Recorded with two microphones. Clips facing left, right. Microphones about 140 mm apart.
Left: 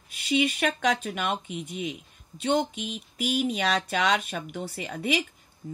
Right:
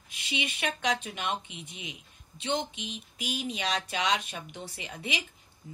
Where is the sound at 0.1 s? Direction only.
45° left (ahead or behind).